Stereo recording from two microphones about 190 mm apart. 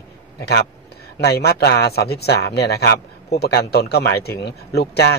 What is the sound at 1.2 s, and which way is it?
Speech, 55° left (ahead or behind).